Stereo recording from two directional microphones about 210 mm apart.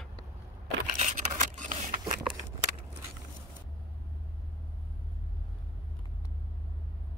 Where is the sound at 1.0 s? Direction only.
35° right (ahead or behind).